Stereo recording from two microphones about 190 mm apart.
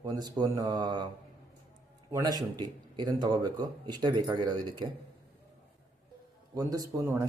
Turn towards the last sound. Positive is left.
turn(degrees=-15)  # may be behind; listen again after turning